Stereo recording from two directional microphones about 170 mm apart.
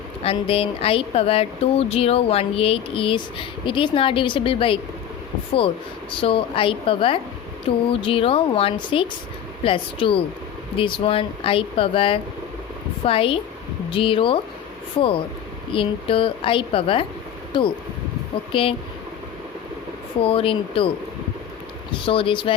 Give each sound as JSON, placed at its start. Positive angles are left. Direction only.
{"t": 0.2, "sound": "speech", "side_deg": 35}
{"t": 6.1, "sound": "speech", "side_deg": 30}
{"t": 20.2, "sound": "speech", "side_deg": 30}
{"t": 22.0, "sound": "speech", "side_deg": 30}